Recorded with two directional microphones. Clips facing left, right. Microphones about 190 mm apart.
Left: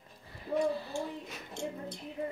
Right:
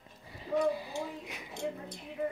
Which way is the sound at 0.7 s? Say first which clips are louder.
Left 1 dB; 15° right (ahead or behind).